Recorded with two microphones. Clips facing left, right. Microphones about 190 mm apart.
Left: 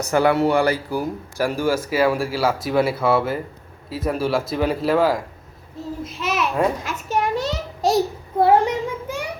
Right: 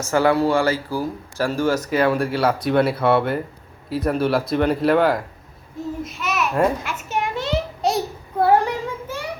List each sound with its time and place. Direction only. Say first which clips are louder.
0.1 s speech: even; 15° left (ahead or behind); by 5.2 s centre (ahead or behind)
6.1 s babbling: left 3 dB; 30° left (ahead or behind)
6.9 s a sound: left 3 dB; 40° left (ahead or behind)
8.4 s child singing: left 1 dB; 20° left (ahead or behind)